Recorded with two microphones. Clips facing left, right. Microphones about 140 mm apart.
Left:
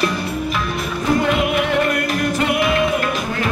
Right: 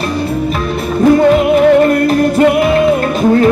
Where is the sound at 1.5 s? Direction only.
40° right (ahead or behind).